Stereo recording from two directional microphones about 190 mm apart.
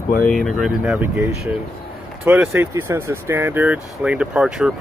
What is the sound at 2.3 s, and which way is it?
Speech, 10° right (ahead or behind).